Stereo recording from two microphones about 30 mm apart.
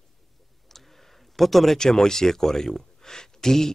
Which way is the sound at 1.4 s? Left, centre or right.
Centre.